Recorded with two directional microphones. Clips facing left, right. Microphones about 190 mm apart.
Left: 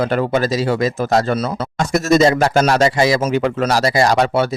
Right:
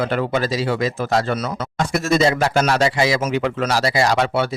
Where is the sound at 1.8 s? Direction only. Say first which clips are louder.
Left 4 dB; 40° left (ahead or behind).